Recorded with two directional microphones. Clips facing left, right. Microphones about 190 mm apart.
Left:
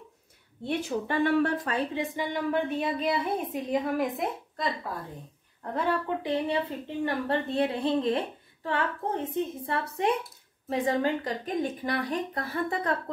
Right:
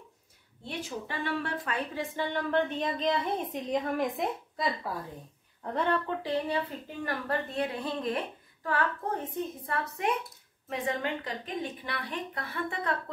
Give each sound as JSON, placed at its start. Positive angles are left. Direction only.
{"t": 0.7, "sound": "speech", "side_deg": 55}
{"t": 2.0, "sound": "a woman's voice", "side_deg": 10}
{"t": 6.0, "sound": "speech", "side_deg": 20}